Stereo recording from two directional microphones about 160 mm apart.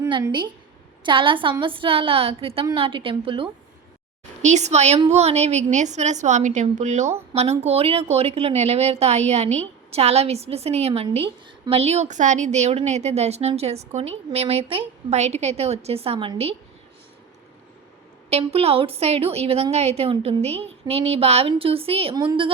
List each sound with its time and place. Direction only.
0.1 s a woman's voice: 30° right (ahead or behind)
4.4 s a woman's voice: 45° right (ahead or behind)
18.3 s a woman's voice: 40° right (ahead or behind)